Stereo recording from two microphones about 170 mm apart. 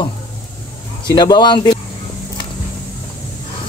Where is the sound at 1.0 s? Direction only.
25° left (ahead or behind).